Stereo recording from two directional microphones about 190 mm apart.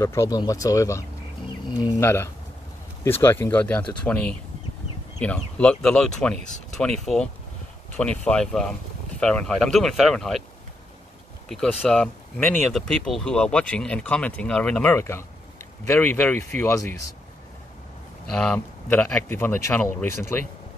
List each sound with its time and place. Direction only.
0.0 s speech: 15° left (ahead or behind)
11.4 s speech: centre (ahead or behind)
18.4 s speech: 10° left (ahead or behind)